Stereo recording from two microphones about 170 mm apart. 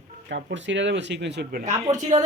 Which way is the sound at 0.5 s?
90° right.